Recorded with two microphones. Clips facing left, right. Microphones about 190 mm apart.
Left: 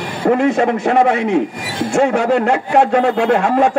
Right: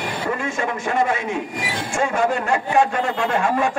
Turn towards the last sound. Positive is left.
turn(degrees=65)  # may be behind; listen again after turning